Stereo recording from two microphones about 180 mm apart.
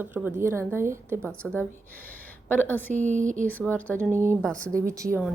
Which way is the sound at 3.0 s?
40° right (ahead or behind).